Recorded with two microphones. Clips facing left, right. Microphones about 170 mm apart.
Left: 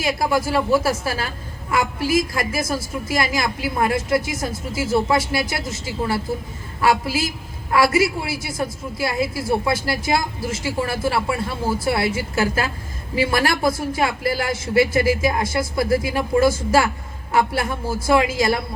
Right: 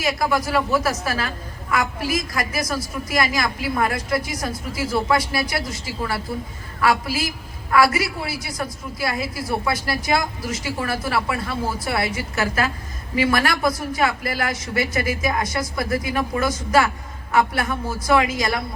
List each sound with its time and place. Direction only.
0.0 s a woman's voice: 25° left (ahead or behind)